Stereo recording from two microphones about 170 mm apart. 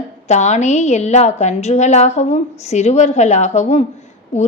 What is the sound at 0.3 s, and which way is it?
A woman's voice, 40° left (ahead or behind).